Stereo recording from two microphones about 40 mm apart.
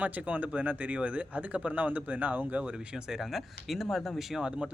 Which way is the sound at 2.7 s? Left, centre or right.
Right.